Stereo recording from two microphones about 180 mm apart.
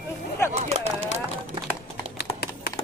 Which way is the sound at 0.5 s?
35° right (ahead or behind).